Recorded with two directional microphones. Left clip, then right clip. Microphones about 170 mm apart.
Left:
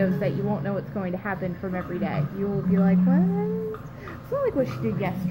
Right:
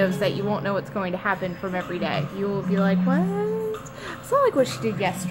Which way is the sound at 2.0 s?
30° right (ahead or behind).